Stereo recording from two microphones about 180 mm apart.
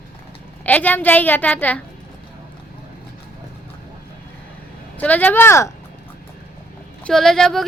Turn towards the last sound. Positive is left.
turn(degrees=0)  # may be behind; listen again after turning